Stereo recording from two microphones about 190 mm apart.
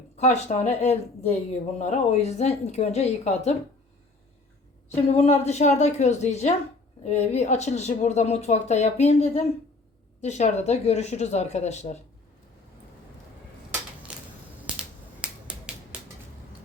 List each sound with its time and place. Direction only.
0.2 s a woman's voice: 35° left (ahead or behind)
5.0 s a woman's voice: 35° left (ahead or behind)
14.8 s finger snapping: 5° right (ahead or behind)